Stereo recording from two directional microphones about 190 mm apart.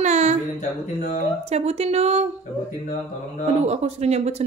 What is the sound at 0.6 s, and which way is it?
Music, 40° left (ahead or behind).